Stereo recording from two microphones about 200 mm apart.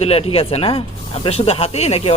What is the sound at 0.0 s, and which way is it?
Speech, 30° left (ahead or behind).